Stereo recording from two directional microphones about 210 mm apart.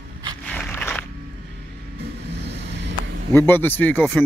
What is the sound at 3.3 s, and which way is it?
Speech, 10° left (ahead or behind).